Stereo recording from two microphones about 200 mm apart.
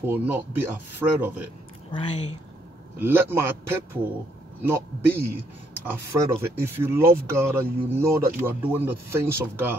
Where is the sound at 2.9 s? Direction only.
10° right (ahead or behind).